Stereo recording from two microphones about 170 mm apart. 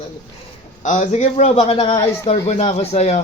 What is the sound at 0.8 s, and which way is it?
A man's voice, 45° left (ahead or behind).